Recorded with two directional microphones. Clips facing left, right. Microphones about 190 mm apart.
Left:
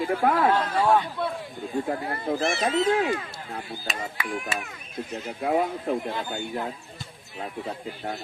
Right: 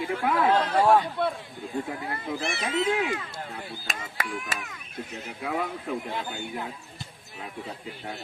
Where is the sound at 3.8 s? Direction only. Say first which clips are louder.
Left 2 dB; 45° right (ahead or behind).